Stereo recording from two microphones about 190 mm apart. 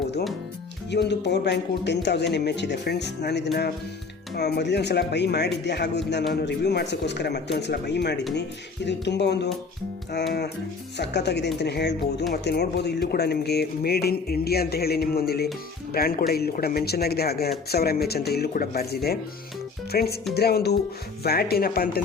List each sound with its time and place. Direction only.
0.9 s speech: 65° left (ahead or behind)
10.9 s speech: 65° left (ahead or behind)